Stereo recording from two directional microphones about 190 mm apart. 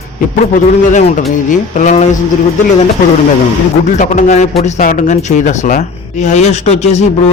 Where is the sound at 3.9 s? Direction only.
40° left (ahead or behind).